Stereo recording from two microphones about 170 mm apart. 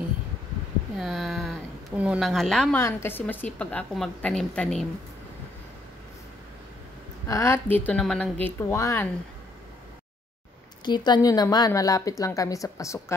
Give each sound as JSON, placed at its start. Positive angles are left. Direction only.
{"t": 0.9, "sound": "a sound", "side_deg": 0}
{"t": 2.8, "sound": "a woman's voice", "side_deg": 15}
{"t": 7.2, "sound": "a woman's voice", "side_deg": 15}
{"t": 7.8, "sound": "a woman's voice", "side_deg": 5}
{"t": 8.5, "sound": "a woman's voice", "side_deg": 15}
{"t": 10.9, "sound": "a woman's voice", "side_deg": 25}